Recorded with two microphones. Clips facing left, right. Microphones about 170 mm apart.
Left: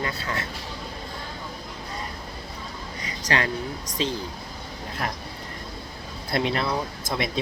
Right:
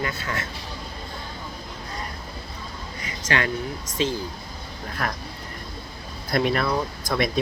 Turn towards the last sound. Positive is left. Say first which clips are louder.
# right 4 dB
turn(degrees=25)  # may be behind; listen again after turning